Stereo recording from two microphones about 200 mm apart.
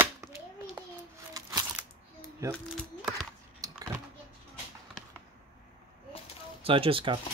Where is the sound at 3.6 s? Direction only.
15° right (ahead or behind).